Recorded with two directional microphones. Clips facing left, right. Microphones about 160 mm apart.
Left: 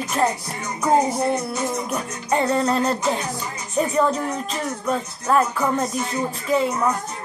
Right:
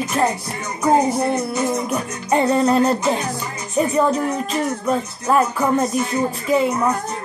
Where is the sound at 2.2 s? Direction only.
15° right (ahead or behind).